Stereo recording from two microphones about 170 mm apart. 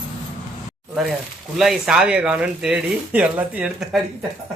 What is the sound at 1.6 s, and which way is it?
Speech, centre (ahead or behind).